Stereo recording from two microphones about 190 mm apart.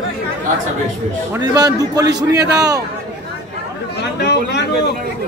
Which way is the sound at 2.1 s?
60° right (ahead or behind).